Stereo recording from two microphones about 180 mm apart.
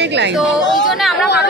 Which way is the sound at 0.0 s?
70° right (ahead or behind).